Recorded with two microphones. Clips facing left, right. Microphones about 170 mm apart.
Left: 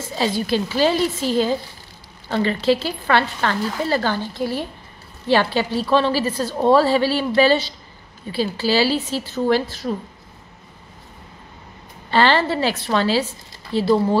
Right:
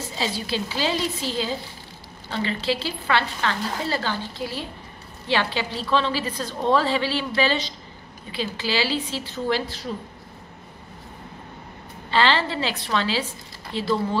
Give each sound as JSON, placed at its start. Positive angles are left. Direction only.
{"t": 0.2, "sound": "a woman's voice", "side_deg": 50}
{"t": 12.1, "sound": "a woman's voice", "side_deg": 45}